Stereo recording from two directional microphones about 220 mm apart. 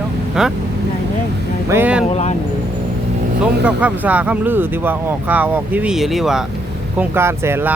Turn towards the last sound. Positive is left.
turn(degrees=-10)  # may be behind; listen again after turning